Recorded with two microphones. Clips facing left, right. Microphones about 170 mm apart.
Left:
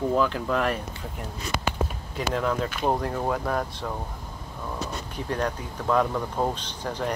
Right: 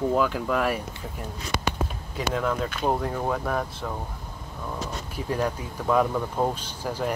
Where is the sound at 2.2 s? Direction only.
Centre (ahead or behind).